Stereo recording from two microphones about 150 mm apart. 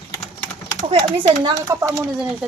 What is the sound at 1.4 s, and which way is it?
Speech, 20° right (ahead or behind).